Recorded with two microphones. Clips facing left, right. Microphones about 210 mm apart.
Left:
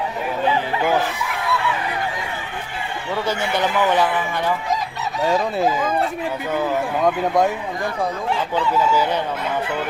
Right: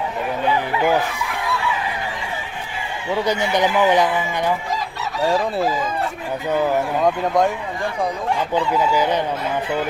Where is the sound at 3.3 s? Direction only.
15° right (ahead or behind).